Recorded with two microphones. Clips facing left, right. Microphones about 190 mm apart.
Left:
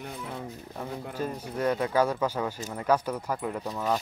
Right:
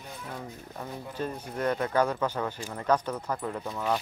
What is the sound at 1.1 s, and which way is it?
Speech, 10° left (ahead or behind).